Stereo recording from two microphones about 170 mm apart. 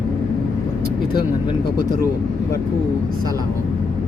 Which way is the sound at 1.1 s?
25° left (ahead or behind).